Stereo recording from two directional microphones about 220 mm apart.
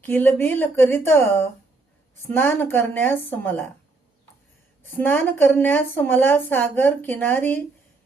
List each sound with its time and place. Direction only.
0.0 s a woman's voice: 10° left (ahead or behind)
4.8 s a woman's voice: 10° left (ahead or behind)